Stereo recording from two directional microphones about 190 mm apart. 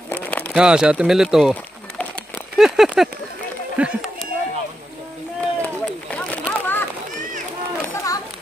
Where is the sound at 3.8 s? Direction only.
Centre (ahead or behind).